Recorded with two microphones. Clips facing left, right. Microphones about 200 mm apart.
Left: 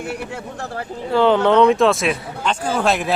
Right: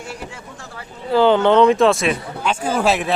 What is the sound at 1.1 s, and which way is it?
Speech, centre (ahead or behind).